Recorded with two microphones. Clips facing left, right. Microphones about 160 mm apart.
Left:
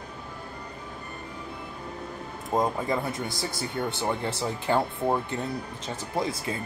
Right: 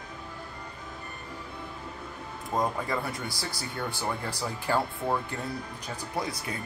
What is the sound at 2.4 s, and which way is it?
Speech, 20° left (ahead or behind).